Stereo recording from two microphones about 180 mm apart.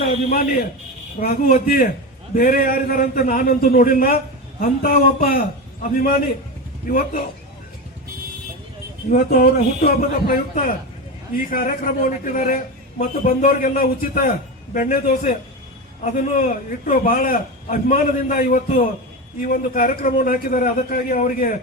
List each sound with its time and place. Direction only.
0.3 s a man's voice: 45° left (ahead or behind)
9.0 s speech: 60° left (ahead or behind)
10.5 s a man's voice: 45° left (ahead or behind)